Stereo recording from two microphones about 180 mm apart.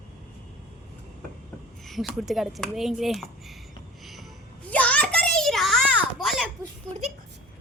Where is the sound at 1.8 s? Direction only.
Centre (ahead or behind).